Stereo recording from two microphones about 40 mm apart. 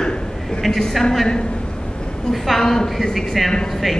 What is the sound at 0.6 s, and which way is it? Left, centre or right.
Speech, centre.